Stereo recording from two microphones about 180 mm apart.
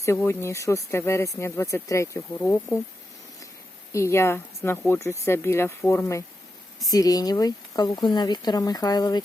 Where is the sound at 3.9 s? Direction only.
15° left (ahead or behind).